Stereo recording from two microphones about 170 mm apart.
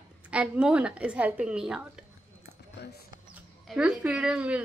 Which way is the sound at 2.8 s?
75° left (ahead or behind).